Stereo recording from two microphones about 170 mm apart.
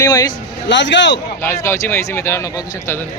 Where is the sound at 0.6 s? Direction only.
90° left.